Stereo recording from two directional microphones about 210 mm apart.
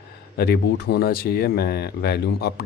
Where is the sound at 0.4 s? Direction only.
50° left (ahead or behind).